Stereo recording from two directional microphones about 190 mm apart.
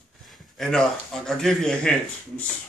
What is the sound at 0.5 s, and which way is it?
Speech, 5° left (ahead or behind).